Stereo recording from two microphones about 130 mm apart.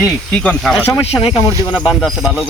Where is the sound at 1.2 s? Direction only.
40° left (ahead or behind).